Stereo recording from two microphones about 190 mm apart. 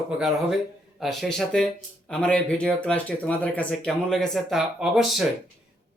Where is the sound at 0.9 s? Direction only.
Centre (ahead or behind).